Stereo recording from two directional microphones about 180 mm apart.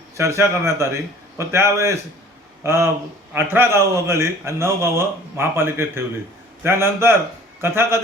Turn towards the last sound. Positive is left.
turn(degrees=-15)  # may be behind; listen again after turning